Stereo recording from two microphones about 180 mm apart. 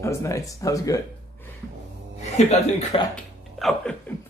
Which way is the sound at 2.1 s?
40° left (ahead or behind).